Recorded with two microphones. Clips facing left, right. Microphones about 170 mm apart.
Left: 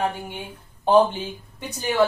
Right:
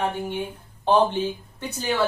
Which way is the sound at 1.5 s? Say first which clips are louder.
Left 5 dB; 15° left (ahead or behind).